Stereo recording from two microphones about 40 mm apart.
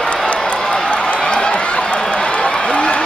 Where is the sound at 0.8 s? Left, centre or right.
Left.